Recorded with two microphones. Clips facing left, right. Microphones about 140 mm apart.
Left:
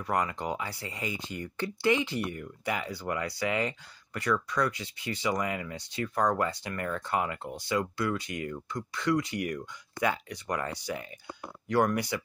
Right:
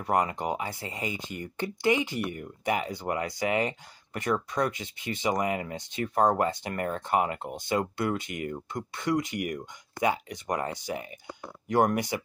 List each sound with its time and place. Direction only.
0.0 s speech: 25° right (ahead or behind)